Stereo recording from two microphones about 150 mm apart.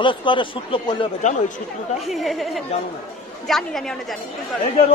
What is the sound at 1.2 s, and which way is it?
Speech, 55° left (ahead or behind).